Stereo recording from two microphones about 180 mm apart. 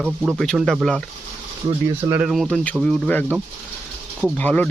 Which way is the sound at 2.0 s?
10° right (ahead or behind).